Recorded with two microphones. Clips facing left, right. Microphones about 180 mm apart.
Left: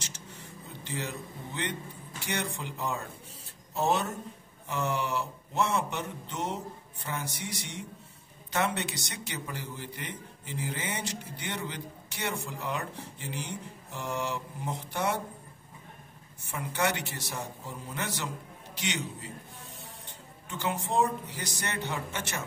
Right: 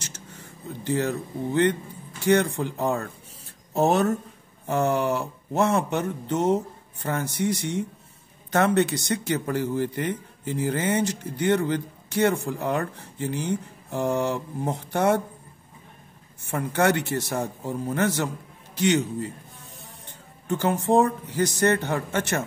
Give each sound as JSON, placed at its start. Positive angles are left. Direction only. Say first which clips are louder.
{"t": 0.8, "sound": "a man's voice", "louder": "right 12 dB", "side_deg": -50}
{"t": 16.4, "sound": "a man's voice", "louder": "right 8 dB", "side_deg": -55}
{"t": 20.4, "sound": "a man's voice", "louder": "right 10 dB", "side_deg": -45}